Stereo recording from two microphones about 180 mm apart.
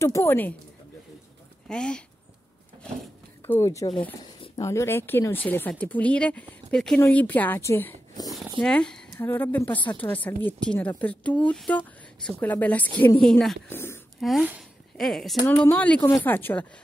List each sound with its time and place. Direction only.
0.0 s speech: 15° left (ahead or behind)
1.7 s speech: 5° left (ahead or behind)
3.4 s speech: 15° left (ahead or behind)
8.3 s speech: centre (ahead or behind)